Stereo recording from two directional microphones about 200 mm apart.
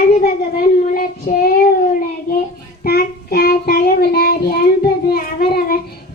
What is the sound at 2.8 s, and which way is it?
Child singing, 50° left (ahead or behind).